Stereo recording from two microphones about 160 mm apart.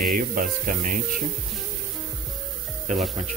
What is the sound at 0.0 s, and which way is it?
Speech, 60° right (ahead or behind).